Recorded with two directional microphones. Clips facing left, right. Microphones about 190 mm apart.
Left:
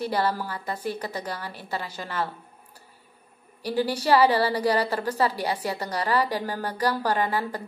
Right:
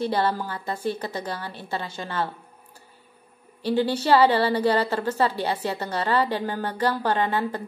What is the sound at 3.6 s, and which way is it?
A woman's voice, 25° right (ahead or behind).